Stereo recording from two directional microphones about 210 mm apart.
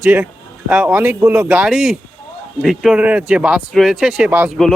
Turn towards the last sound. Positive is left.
turn(degrees=-5)  # may be behind; listen again after turning